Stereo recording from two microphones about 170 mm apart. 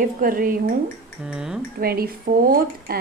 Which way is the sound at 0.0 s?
55° right (ahead or behind).